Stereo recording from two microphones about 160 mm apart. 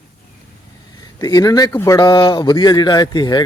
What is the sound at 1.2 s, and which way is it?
Speech, 25° left (ahead or behind).